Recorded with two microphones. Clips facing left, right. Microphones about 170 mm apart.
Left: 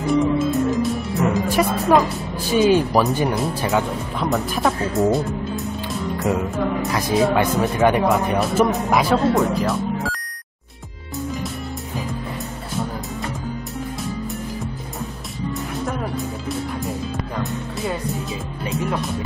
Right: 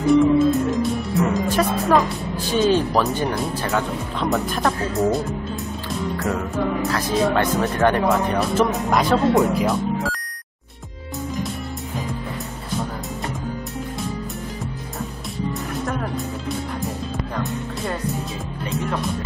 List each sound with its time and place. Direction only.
0.0 s music: centre (ahead or behind)
1.5 s music: 10° left (ahead or behind)
2.5 s speech: 10° left (ahead or behind)
4.2 s speech: centre (ahead or behind)
7.2 s speech: 5° left (ahead or behind)
17.4 s music: centre (ahead or behind)